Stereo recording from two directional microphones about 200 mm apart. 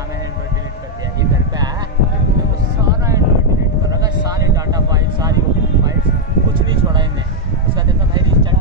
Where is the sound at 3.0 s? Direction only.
15° right (ahead or behind).